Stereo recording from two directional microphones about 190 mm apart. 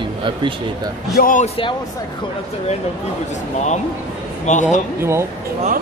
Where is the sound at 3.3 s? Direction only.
40° left (ahead or behind).